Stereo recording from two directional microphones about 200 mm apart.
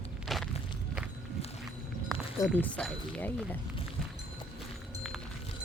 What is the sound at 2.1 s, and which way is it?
Run, 5° left (ahead or behind).